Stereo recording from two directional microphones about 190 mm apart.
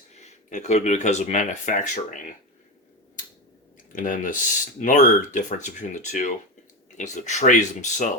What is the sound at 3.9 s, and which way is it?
Speech, 45° left (ahead or behind).